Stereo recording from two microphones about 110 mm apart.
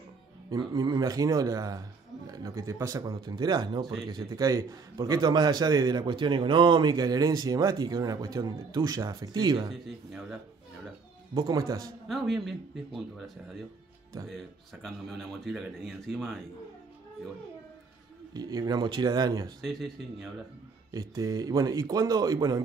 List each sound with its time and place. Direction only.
0.5 s a man's voice: 40° right (ahead or behind)
9.7 s speech: centre (ahead or behind)
11.4 s a man's voice: 35° right (ahead or behind)
12.1 s speech: centre (ahead or behind)
14.3 s speech: centre (ahead or behind)
18.3 s a man's voice: 35° right (ahead or behind)
19.6 s speech: centre (ahead or behind)
20.9 s a man's voice: 35° right (ahead or behind)